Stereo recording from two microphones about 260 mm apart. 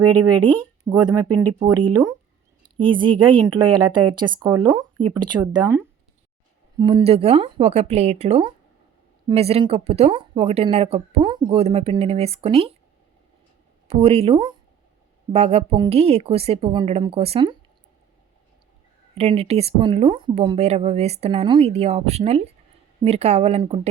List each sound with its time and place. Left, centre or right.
0.9 s speech: centre
13.8 s speech: right
19.1 s speech: right